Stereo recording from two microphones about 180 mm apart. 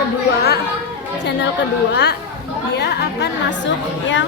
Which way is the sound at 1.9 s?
70° left (ahead or behind).